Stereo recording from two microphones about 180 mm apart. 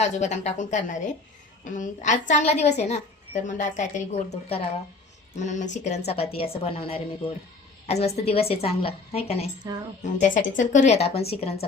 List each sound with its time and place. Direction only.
0.0 s a woman's voice: 40° left (ahead or behind)